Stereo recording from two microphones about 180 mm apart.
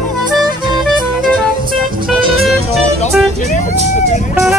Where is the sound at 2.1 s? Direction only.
Centre (ahead or behind).